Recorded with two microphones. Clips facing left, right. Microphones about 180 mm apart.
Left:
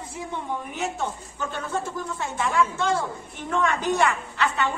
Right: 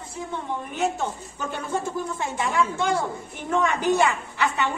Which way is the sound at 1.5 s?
15° right (ahead or behind).